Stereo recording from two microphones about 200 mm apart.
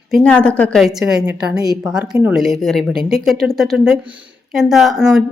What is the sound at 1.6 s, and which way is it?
Speech, 20° right (ahead or behind).